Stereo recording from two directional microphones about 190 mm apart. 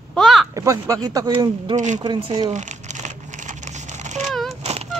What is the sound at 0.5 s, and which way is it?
Speech, 15° right (ahead or behind).